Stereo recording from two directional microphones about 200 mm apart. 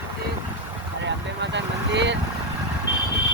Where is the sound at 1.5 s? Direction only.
60° right (ahead or behind).